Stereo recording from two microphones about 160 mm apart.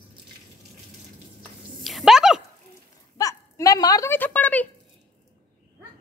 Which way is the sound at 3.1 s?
20° left (ahead or behind).